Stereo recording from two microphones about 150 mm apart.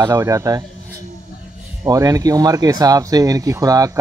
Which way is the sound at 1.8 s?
25° right (ahead or behind).